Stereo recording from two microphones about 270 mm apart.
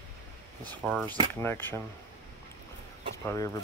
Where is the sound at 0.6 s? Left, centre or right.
Centre.